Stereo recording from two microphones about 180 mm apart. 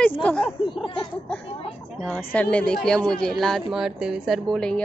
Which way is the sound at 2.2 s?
10° left (ahead or behind).